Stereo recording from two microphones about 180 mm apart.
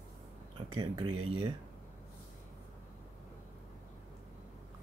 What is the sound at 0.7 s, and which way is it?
Speech, 25° right (ahead or behind).